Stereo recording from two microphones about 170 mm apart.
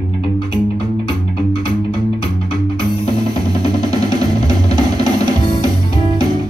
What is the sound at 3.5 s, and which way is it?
Music, 25° right (ahead or behind).